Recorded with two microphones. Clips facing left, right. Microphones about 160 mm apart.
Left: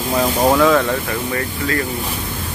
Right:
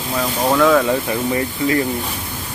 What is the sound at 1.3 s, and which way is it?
Speech, 20° right (ahead or behind).